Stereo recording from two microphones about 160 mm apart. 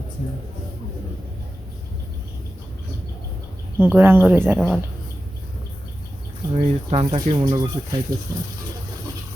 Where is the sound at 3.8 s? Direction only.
15° right (ahead or behind).